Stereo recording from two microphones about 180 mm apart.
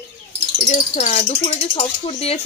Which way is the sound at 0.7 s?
45° left (ahead or behind).